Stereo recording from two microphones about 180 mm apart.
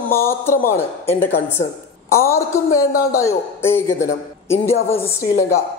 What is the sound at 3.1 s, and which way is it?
A woman's voice, 15° left (ahead or behind).